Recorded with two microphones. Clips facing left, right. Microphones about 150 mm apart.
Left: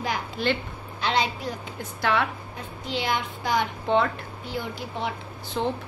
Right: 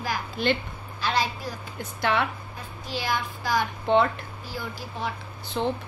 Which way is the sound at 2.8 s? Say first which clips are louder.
Left 2 dB; 20° left (ahead or behind).